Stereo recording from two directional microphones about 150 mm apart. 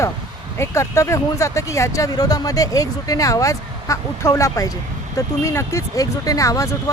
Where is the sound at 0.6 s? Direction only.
20° left (ahead or behind).